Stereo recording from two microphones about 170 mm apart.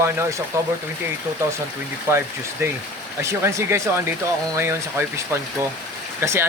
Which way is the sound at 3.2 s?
15° right (ahead or behind).